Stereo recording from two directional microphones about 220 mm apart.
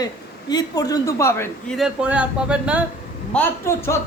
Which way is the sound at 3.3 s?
10° left (ahead or behind).